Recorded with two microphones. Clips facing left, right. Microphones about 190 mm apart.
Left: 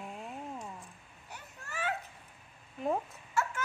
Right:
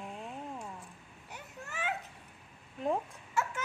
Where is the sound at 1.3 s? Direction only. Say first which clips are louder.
Even; 15° right (ahead or behind).